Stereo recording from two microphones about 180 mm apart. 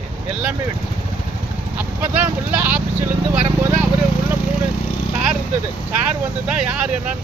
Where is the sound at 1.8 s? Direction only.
10° right (ahead or behind).